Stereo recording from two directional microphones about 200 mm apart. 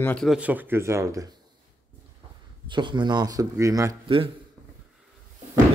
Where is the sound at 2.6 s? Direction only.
25° right (ahead or behind).